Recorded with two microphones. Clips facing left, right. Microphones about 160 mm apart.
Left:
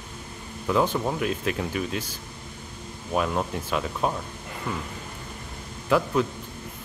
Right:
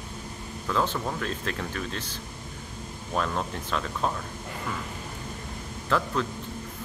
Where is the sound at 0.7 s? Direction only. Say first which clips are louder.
Left 4 dB; 15° left (ahead or behind).